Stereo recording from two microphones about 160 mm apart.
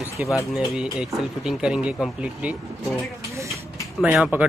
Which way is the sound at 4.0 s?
10° right (ahead or behind).